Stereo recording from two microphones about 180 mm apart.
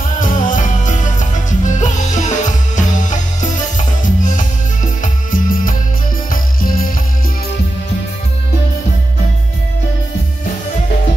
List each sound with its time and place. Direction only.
0.2 s music: 45° left (ahead or behind)